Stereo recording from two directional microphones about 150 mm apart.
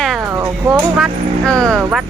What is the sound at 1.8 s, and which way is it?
Speech, 10° right (ahead or behind).